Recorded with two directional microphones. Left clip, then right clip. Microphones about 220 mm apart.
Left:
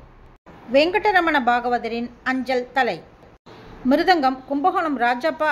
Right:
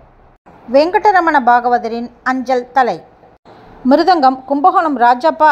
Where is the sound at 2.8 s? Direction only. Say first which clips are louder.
Right 8 dB; 20° right (ahead or behind).